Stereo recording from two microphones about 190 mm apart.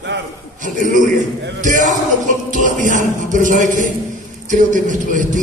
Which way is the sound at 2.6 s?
40° right (ahead or behind).